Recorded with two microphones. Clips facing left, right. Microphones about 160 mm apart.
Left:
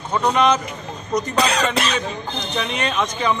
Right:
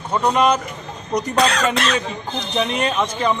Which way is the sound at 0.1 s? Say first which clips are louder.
Right 1 dB; 5° right (ahead or behind).